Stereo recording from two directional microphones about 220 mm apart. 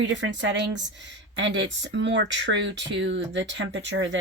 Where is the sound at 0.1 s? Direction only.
55° right (ahead or behind).